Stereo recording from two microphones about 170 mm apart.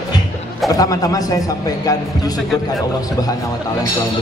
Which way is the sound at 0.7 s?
20° left (ahead or behind).